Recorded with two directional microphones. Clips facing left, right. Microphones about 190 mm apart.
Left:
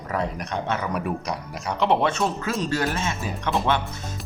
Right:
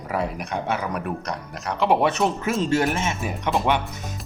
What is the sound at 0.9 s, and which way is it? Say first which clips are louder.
Speech: left 1 dB; centre (ahead or behind).